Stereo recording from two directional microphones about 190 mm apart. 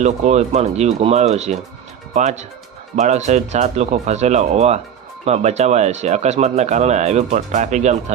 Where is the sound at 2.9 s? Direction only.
35° right (ahead or behind).